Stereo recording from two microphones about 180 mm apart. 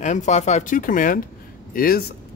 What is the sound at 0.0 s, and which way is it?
Speech, 40° left (ahead or behind).